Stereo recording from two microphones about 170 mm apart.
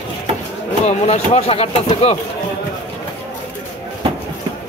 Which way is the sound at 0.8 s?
35° left (ahead or behind).